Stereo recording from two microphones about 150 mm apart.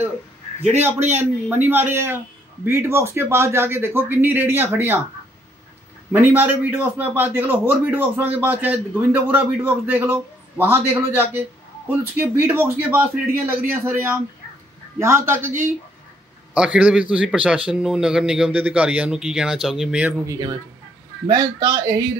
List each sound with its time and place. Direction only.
0.7 s a man's voice: 15° right (ahead or behind)
6.2 s a man's voice: 15° right (ahead or behind)
16.5 s a man's voice: 5° right (ahead or behind)
20.2 s a man's voice: 25° right (ahead or behind)